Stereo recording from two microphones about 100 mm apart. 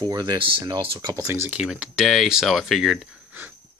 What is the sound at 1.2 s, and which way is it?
Speech, 25° right (ahead or behind).